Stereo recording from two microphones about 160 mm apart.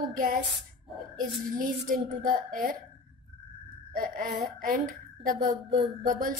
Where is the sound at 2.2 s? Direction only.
55° right (ahead or behind).